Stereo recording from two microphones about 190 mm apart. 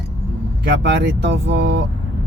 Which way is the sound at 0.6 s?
60° right (ahead or behind).